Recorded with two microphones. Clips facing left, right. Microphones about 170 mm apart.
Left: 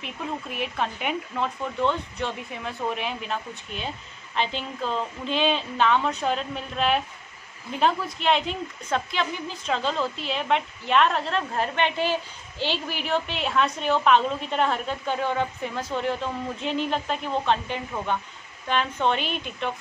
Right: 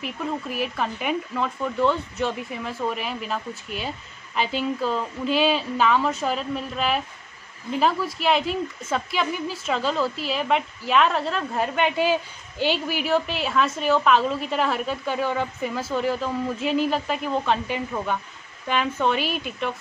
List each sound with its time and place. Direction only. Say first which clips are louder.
0.0 s a woman's voice: right 4 dB; centre (ahead or behind)